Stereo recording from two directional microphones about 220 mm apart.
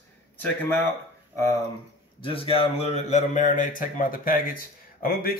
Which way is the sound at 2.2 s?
25° left (ahead or behind).